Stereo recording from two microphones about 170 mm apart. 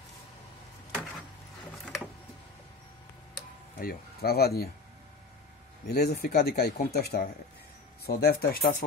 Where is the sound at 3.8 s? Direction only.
65° left (ahead or behind).